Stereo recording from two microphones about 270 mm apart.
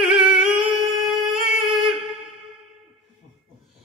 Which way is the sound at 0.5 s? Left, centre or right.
Centre.